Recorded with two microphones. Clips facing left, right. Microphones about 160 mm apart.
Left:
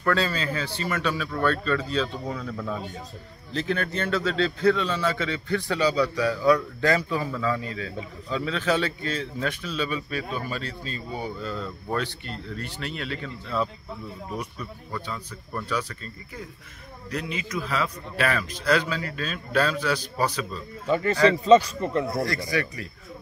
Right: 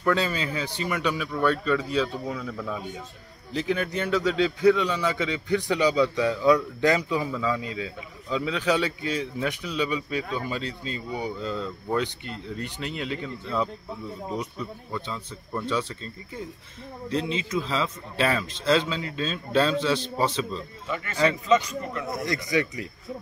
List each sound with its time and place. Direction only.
0.0 s a man's voice: 15° right (ahead or behind)
3.5 s a man's voice: 15° right (ahead or behind)
17.1 s a man's voice: 25° right (ahead or behind)
20.8 s a man's voice: 35° left (ahead or behind)
22.0 s a man's voice: 20° right (ahead or behind)